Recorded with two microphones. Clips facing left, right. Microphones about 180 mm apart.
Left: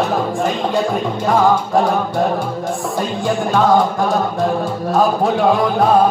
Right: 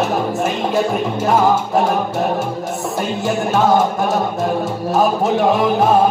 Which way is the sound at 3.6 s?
25° right (ahead or behind).